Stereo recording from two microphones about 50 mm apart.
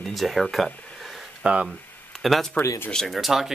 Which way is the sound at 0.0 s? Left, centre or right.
Centre.